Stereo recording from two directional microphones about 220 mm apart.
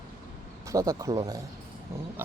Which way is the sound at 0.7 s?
15° right (ahead or behind).